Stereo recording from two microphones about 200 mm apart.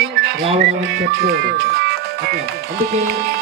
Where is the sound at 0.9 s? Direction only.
55° right (ahead or behind).